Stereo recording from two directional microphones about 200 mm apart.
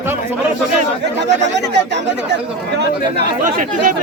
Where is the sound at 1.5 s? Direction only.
60° right (ahead or behind).